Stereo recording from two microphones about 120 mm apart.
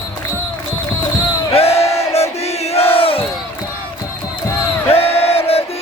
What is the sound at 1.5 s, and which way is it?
Crowd, 55° left (ahead or behind).